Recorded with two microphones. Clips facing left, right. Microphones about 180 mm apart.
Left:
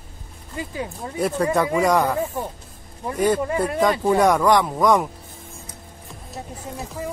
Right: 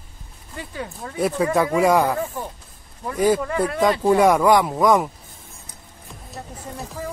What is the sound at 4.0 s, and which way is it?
Speech, 5° right (ahead or behind).